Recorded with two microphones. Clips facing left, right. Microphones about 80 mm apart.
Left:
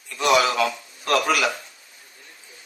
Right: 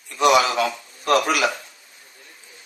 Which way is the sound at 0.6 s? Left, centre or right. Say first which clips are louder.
Even; right.